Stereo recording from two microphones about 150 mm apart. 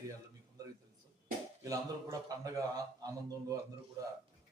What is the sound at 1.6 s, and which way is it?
A man's voice, 20° right (ahead or behind).